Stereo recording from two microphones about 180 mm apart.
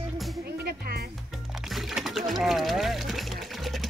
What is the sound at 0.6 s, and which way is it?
Music, 60° right (ahead or behind).